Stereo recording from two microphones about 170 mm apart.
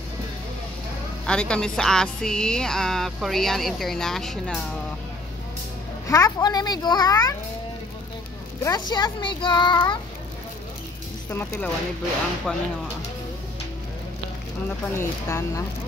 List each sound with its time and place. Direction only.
1.2 s speech: 5° left (ahead or behind)
6.0 s a child's voice: 20° left (ahead or behind)
8.6 s a child's voice: 25° left (ahead or behind)
11.2 s speech: 15° left (ahead or behind)
14.9 s speech: 15° left (ahead or behind)